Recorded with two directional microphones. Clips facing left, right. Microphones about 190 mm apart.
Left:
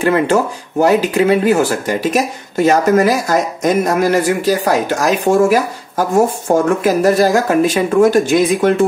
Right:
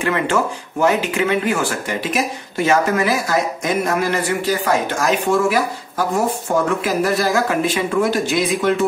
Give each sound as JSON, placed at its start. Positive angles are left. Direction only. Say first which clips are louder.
{"t": 0.0, "sound": "speech", "louder": "left 6 dB", "side_deg": 40}